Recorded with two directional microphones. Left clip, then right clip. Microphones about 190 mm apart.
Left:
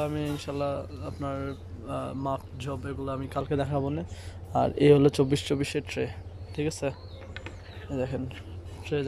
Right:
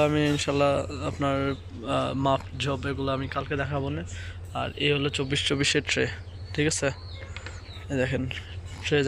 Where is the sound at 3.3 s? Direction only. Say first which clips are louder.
Even; 20° left (ahead or behind).